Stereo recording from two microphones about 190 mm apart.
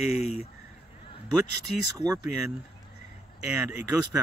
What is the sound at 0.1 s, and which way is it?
Speech, 35° left (ahead or behind).